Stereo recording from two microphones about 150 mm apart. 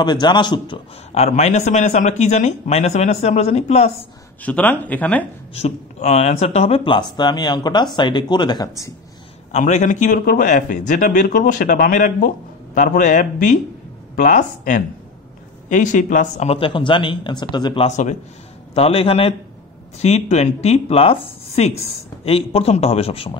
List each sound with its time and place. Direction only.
0.0 s speech: 30° left (ahead or behind)
1.1 s speech: 45° left (ahead or behind)
4.4 s speech: 10° left (ahead or behind)
5.5 s speech: 45° left (ahead or behind); by 8.9 s 25° left (ahead or behind)
9.5 s a man's voice: 50° left (ahead or behind); by 17.8 s 30° left (ahead or behind)
17.8 s speech: 50° left (ahead or behind)